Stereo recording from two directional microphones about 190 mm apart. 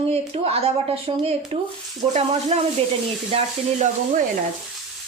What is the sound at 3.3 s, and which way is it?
Speech, 30° right (ahead or behind).